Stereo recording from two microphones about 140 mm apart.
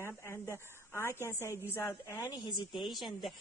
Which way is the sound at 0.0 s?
15° left (ahead or behind).